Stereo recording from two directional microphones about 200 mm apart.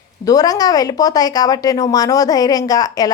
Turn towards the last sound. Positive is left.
turn(degrees=20)  # may be behind; listen again after turning